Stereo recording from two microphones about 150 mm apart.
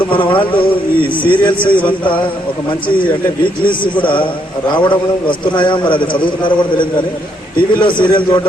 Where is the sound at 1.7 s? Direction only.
35° left (ahead or behind).